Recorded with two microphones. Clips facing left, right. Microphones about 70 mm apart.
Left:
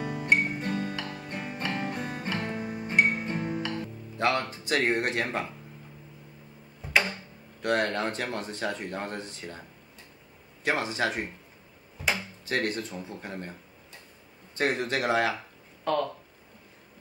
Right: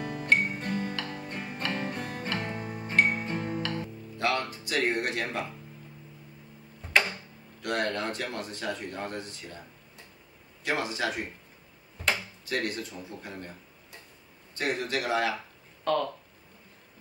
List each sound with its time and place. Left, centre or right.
0.0 s music: centre
4.2 s speech: left
6.8 s tick-tock: centre
7.6 s speech: left
10.6 s speech: left
12.4 s speech: left
15.8 s speech: centre